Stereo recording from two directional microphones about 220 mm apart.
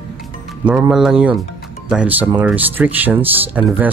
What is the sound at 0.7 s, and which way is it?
Speech, 5° right (ahead or behind).